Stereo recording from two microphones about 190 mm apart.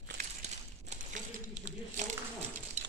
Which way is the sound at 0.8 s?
40° right (ahead or behind).